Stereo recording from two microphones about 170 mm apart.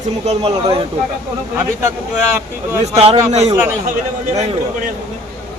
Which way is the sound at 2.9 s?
35° right (ahead or behind).